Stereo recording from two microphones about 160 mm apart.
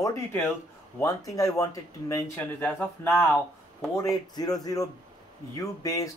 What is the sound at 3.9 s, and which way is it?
Speech, 20° left (ahead or behind).